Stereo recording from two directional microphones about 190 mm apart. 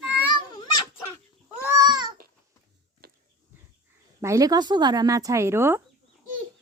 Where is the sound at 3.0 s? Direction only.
55° right (ahead or behind).